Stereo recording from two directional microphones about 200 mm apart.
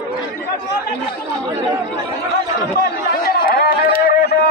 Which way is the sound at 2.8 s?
50° left (ahead or behind).